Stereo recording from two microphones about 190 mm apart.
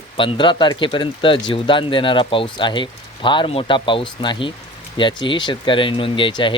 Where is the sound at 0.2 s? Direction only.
25° left (ahead or behind).